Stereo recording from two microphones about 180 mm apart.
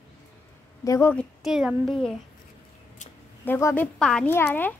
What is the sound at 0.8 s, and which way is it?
Speech, 15° left (ahead or behind).